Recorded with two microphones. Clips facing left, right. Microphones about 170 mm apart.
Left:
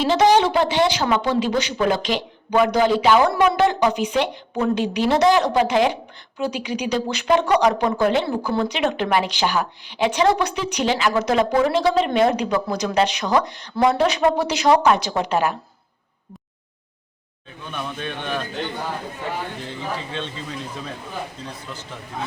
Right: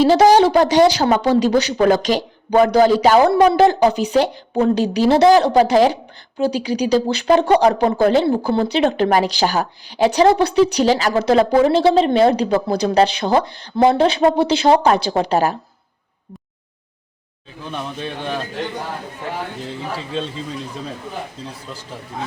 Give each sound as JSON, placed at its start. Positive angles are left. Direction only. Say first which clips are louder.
{"t": 0.0, "sound": "a woman's voice", "louder": "right 5 dB", "side_deg": -40}
{"t": 17.7, "sound": "a woman's voice", "louder": "right 2 dB", "side_deg": -35}